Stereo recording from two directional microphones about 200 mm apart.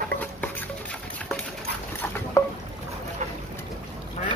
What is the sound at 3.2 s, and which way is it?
Boat, 35° right (ahead or behind).